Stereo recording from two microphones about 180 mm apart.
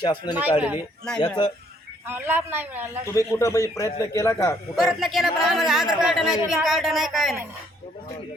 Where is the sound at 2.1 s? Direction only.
10° right (ahead or behind).